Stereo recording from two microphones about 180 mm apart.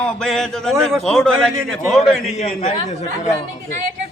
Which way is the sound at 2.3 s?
40° left (ahead or behind).